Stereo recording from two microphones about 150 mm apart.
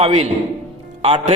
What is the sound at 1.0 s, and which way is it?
Speech, 40° right (ahead or behind).